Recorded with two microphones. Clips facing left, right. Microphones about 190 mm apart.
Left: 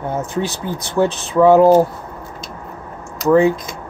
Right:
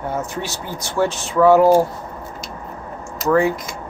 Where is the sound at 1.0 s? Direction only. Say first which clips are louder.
Left 3 dB; 15° left (ahead or behind).